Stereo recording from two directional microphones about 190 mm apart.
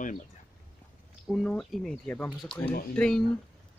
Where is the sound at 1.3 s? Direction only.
Centre (ahead or behind).